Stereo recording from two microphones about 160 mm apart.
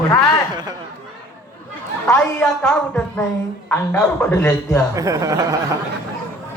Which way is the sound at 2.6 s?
5° left (ahead or behind).